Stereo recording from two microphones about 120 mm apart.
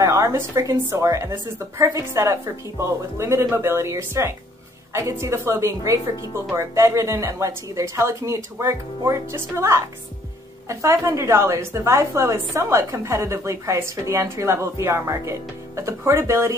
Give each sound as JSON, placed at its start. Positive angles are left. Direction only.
{"t": 0.0, "sound": "a woman's voice", "side_deg": -25}